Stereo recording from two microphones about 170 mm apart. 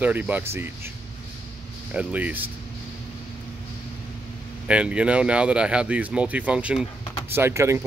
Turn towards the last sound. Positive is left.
turn(degrees=-15)  # may be behind; listen again after turning